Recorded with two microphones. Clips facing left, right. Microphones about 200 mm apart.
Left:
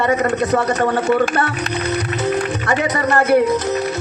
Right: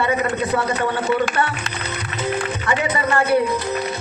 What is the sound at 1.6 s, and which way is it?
Music, 40° left (ahead or behind).